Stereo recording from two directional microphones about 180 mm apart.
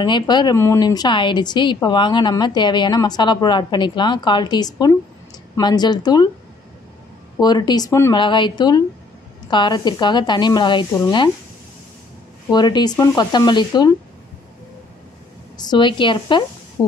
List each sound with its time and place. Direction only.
0.0 s a woman's voice: 25° left (ahead or behind)
7.3 s a woman's voice: 25° left (ahead or behind)
10.9 s speech: 15° left (ahead or behind)
12.4 s a woman's voice: 25° left (ahead or behind)
15.5 s a woman's voice: 25° left (ahead or behind)